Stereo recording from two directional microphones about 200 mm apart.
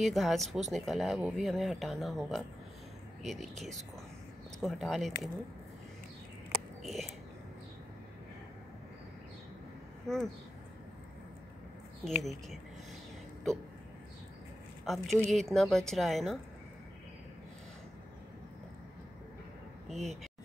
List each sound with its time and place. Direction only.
0.0 s speech: centre (ahead or behind)
6.8 s a sound: centre (ahead or behind)
10.0 s speech: centre (ahead or behind)
12.2 s speech: centre (ahead or behind)
14.9 s speech: centre (ahead or behind)
19.9 s speech: centre (ahead or behind)